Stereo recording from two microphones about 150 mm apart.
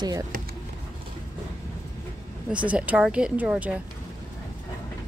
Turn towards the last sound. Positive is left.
turn(degrees=-10)  # may be behind; listen again after turning